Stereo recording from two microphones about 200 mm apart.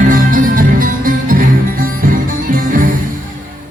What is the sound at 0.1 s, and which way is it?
Music, 40° right (ahead or behind).